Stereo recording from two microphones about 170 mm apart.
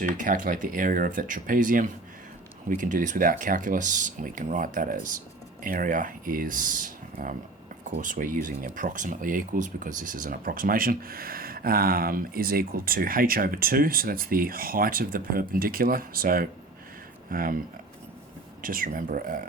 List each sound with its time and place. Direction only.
0.0 s speech: 50° right (ahead or behind)
18.6 s speech: 55° right (ahead or behind)